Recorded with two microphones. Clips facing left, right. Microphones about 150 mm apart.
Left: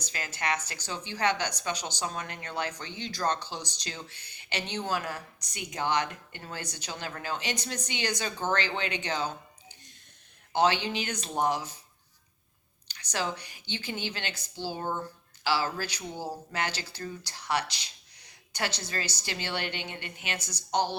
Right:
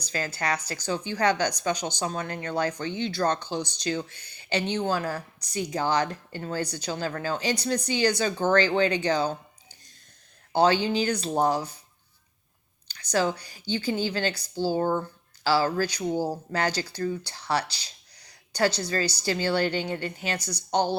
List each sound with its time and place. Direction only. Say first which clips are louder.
0.0 s speech: right 5 dB; 35° right (ahead or behind)
3.6 s speech: right 11 dB; 35° left (ahead or behind)
4.3 s speech: right 8 dB; 30° right (ahead or behind)
10.5 s speech: right 4 dB; 35° right (ahead or behind)
12.9 s speech: right 7 dB; 35° right (ahead or behind)